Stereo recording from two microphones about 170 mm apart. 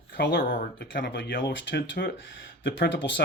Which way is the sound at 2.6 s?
90° left.